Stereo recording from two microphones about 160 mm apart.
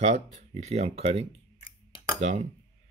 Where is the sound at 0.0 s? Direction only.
45° right (ahead or behind).